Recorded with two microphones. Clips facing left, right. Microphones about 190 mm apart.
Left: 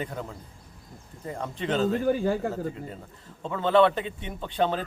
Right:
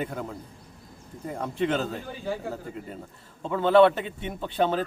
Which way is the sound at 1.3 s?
5° right (ahead or behind).